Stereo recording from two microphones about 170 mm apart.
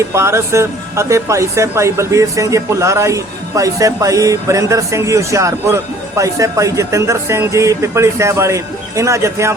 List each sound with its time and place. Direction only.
0.1 s speech: 15° right (ahead or behind)